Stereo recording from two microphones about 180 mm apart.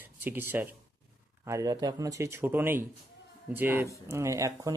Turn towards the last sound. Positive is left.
turn(degrees=-15)  # may be behind; listen again after turning